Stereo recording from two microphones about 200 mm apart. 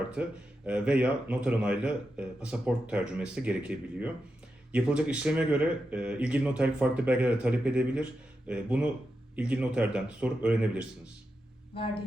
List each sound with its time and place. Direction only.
0.1 s speech: 5° right (ahead or behind)